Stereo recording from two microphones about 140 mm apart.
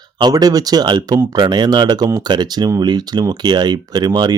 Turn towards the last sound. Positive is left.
turn(degrees=-30)  # may be behind; listen again after turning